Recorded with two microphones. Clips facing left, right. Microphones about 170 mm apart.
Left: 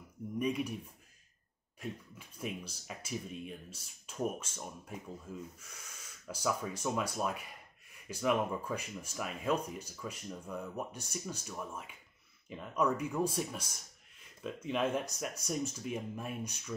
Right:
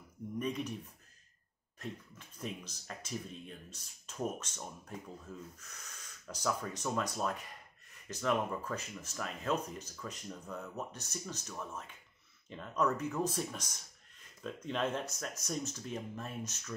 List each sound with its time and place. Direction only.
0.4 s speech: 10° left (ahead or behind)
1.8 s speech: 10° left (ahead or behind)